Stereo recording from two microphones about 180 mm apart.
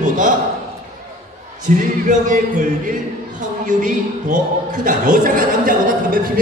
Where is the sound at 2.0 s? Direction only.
45° right (ahead or behind).